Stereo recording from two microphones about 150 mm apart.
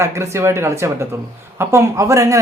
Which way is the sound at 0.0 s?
15° right (ahead or behind).